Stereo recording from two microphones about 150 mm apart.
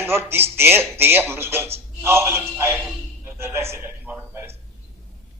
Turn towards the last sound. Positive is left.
turn(degrees=-15)  # may be behind; listen again after turning